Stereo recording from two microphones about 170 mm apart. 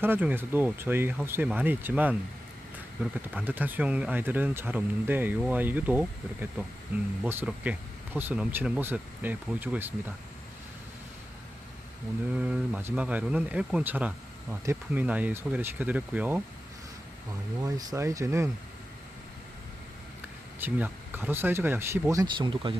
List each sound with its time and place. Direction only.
0.0 s speech: 10° right (ahead or behind)
12.3 s speech: 5° right (ahead or behind)
17.6 s speech: 20° right (ahead or behind)
20.6 s speech: 10° right (ahead or behind); by 22.7 s 30° right (ahead or behind)